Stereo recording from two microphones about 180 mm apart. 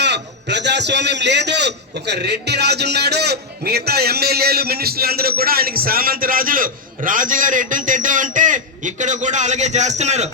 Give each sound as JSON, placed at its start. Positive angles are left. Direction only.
{"t": 0.0, "sound": "a man's voice", "side_deg": -70}